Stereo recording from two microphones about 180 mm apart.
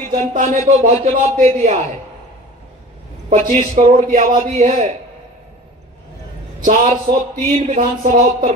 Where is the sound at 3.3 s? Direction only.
40° right (ahead or behind).